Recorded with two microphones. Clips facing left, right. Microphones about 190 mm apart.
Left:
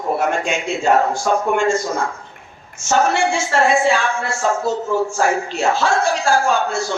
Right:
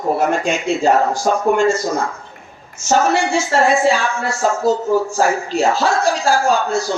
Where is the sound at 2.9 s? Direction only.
35° right (ahead or behind).